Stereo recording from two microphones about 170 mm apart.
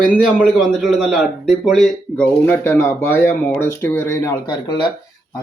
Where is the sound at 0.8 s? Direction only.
Centre (ahead or behind).